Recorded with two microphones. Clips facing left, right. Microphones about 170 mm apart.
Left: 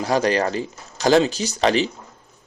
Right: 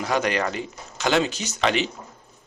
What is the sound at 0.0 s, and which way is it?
Speech, 35° left (ahead or behind).